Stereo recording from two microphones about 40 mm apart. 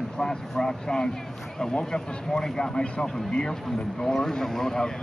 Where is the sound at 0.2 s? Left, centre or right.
Centre.